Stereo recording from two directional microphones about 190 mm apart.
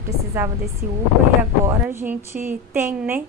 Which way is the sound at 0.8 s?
45° right (ahead or behind).